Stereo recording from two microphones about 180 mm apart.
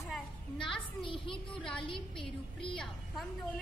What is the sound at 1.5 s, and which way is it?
Speech, 5° left (ahead or behind).